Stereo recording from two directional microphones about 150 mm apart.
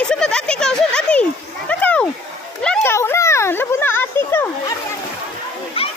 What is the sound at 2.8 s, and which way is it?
A child's voice, 15° left (ahead or behind).